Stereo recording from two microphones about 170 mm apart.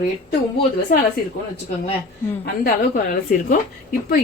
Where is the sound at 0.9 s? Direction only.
50° left (ahead or behind).